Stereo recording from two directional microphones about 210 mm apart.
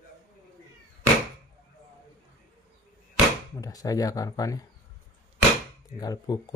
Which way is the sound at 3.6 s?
15° left (ahead or behind).